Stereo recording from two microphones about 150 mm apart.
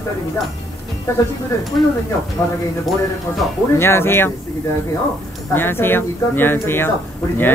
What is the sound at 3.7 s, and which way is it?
Speech, 15° left (ahead or behind).